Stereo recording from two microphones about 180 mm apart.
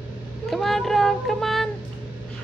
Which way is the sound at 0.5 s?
Centre (ahead or behind).